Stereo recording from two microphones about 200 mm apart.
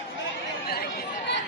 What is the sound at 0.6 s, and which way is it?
Chatter, 50° left (ahead or behind).